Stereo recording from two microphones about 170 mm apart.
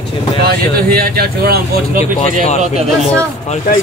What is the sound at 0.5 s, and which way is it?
Speech, 65° right (ahead or behind).